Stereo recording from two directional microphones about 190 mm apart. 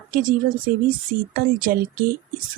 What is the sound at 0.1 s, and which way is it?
Speech, 45° right (ahead or behind).